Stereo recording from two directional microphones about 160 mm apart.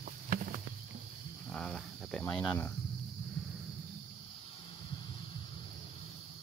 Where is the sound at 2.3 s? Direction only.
5° left (ahead or behind).